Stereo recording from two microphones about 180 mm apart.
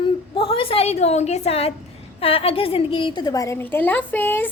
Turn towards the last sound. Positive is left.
turn(degrees=10)  # may be behind; listen again after turning